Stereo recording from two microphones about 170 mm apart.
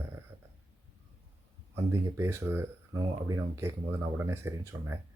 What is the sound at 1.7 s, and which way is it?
Speech, 15° right (ahead or behind).